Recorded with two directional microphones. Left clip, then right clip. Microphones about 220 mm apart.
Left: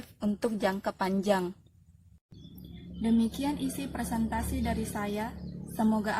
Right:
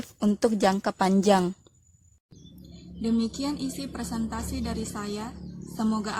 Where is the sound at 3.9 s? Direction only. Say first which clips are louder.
Left 1 dB; centre (ahead or behind).